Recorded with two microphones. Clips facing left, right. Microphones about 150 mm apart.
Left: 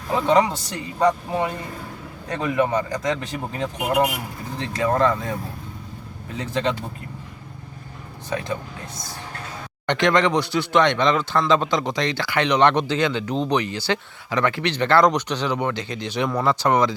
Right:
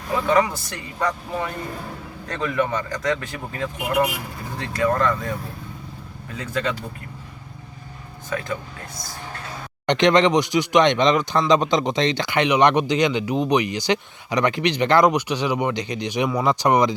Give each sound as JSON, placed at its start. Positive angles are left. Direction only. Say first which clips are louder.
{"t": 0.3, "sound": "speech", "louder": "left 1 dB", "side_deg": 20}
{"t": 6.3, "sound": "speech", "louder": "left 2 dB", "side_deg": 20}
{"t": 9.8, "sound": "speech", "louder": "right 3 dB", "side_deg": -20}